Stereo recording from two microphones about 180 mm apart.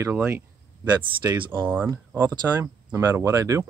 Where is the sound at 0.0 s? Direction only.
10° right (ahead or behind).